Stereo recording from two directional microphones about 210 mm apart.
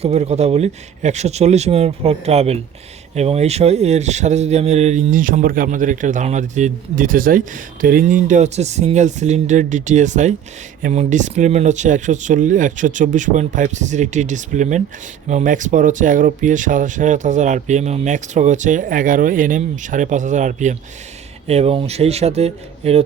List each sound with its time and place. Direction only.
0.0 s speech: 30° right (ahead or behind)